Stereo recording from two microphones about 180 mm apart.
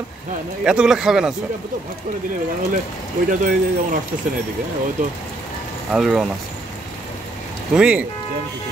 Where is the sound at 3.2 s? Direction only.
50° right (ahead or behind).